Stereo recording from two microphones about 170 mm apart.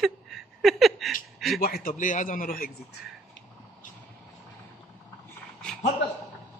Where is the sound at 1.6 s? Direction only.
60° left (ahead or behind).